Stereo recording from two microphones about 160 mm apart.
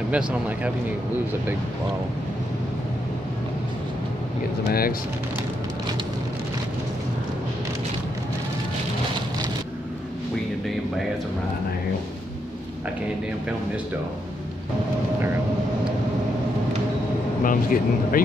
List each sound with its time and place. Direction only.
0.1 s speech: 10° right (ahead or behind)
4.6 s speech: 70° left (ahead or behind)
17.4 s speech: 60° left (ahead or behind)